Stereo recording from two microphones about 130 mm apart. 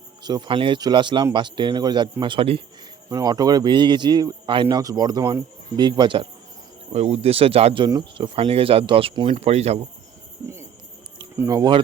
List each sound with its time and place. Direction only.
0.2 s speech: 35° right (ahead or behind)
3.1 s speech: 30° right (ahead or behind)
4.8 s speech: 30° right (ahead or behind)
6.9 s speech: 50° right (ahead or behind)
7.9 s speech: 30° right (ahead or behind)
8.4 s speech: 45° right (ahead or behind)
10.4 s cricket: 20° right (ahead or behind)
11.3 s speech: 30° right (ahead or behind)